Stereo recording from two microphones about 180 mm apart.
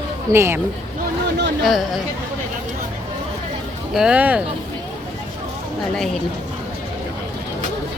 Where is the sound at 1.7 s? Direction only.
Centre (ahead or behind).